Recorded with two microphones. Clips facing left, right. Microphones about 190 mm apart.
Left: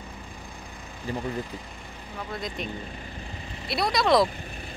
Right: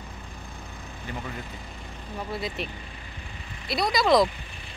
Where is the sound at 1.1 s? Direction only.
35° left (ahead or behind).